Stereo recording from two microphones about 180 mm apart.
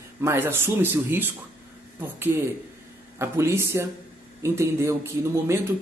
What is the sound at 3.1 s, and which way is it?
Speech, 15° right (ahead or behind).